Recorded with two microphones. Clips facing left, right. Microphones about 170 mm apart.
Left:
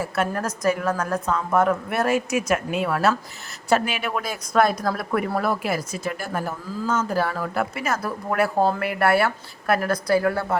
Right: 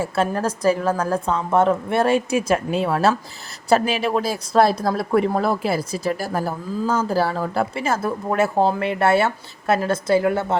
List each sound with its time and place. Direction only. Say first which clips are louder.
0.0 s speech: right 3 dB; 30° right (ahead or behind)